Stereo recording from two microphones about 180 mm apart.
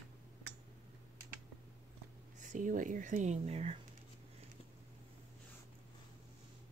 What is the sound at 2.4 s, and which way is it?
Speech, 45° right (ahead or behind).